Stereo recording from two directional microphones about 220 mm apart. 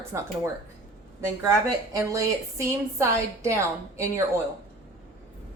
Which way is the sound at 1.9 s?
15° right (ahead or behind).